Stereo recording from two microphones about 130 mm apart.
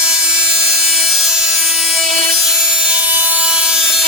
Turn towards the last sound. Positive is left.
turn(degrees=-5)  # may be behind; listen again after turning